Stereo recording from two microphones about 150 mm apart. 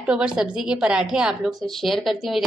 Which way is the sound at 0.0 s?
5° right (ahead or behind).